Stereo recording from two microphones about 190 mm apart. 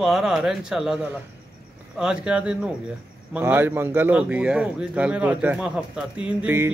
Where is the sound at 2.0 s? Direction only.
5° right (ahead or behind).